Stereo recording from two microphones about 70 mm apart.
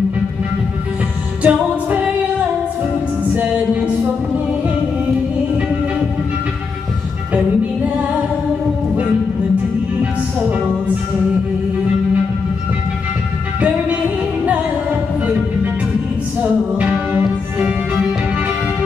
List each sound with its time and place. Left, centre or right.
1.4 s music: right
13.6 s music: centre